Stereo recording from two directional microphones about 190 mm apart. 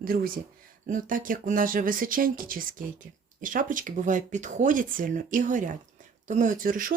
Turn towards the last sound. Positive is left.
turn(degrees=-45)  # may be behind; listen again after turning